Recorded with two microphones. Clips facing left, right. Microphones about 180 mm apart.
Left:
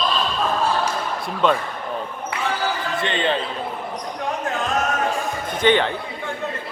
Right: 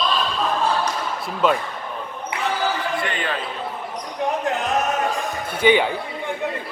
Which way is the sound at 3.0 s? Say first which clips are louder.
Left 4 dB; 25° left (ahead or behind).